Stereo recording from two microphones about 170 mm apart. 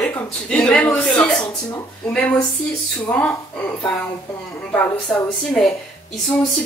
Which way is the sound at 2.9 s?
10° left (ahead or behind).